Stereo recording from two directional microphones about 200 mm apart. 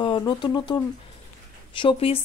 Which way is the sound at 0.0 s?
25° left (ahead or behind).